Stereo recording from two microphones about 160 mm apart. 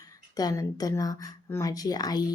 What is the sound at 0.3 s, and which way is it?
A woman's voice, 20° left (ahead or behind).